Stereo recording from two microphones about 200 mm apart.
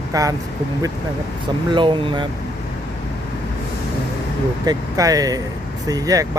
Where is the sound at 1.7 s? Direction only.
25° right (ahead or behind).